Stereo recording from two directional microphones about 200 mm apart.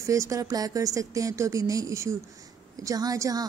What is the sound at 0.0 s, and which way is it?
A woman's voice, 15° right (ahead or behind).